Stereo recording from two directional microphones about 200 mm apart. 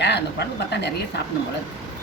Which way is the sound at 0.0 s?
55° left (ahead or behind).